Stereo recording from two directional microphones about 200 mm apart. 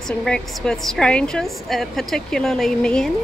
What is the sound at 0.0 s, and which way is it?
A woman's voice, 5° left (ahead or behind).